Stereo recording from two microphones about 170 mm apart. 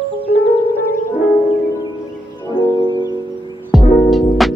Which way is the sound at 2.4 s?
25° left (ahead or behind).